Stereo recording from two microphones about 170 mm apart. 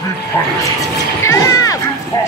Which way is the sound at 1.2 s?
20° left (ahead or behind).